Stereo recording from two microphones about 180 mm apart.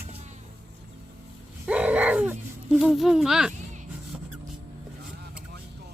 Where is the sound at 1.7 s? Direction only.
5° right (ahead or behind).